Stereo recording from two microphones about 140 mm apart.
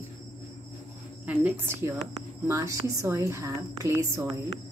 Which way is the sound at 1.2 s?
15° right (ahead or behind).